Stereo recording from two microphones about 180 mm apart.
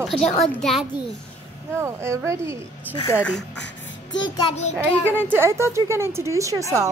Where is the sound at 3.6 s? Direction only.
90° left.